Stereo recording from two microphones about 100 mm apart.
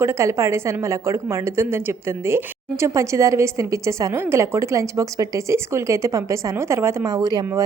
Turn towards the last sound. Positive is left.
turn(degrees=-40)  # may be behind; listen again after turning